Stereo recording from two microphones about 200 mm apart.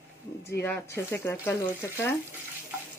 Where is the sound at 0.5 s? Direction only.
10° left (ahead or behind).